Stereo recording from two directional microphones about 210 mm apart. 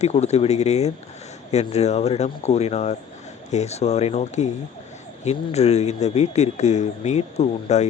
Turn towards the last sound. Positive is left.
turn(degrees=30)  # may be behind; listen again after turning